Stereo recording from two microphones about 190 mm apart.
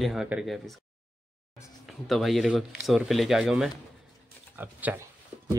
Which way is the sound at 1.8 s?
Centre (ahead or behind).